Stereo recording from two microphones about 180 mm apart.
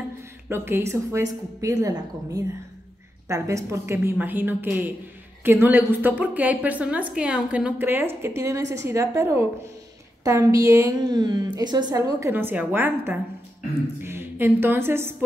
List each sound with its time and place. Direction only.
0.5 s a woman's voice: 15° right (ahead or behind)